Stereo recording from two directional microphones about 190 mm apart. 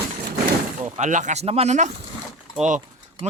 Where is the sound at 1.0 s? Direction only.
40° right (ahead or behind).